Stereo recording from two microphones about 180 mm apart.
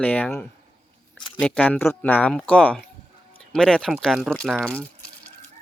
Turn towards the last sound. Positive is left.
turn(degrees=5)  # may be behind; listen again after turning